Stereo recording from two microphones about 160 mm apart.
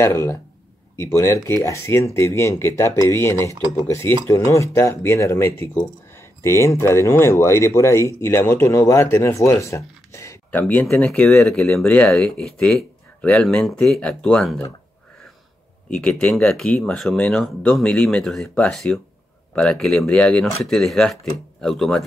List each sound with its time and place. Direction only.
0.0 s speech: 15° left (ahead or behind)
15.9 s speech: 5° left (ahead or behind)